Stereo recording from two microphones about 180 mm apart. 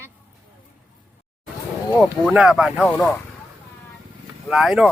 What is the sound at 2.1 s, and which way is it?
Speech, 5° right (ahead or behind).